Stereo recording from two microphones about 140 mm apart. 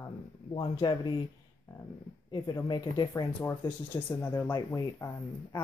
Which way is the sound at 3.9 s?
15° left (ahead or behind).